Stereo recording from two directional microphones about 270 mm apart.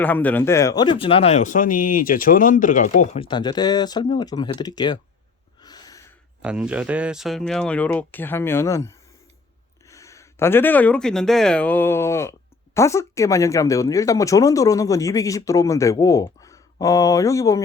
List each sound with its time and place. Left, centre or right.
0.0 s speech: centre
5.6 s a sound: centre
6.4 s speech: centre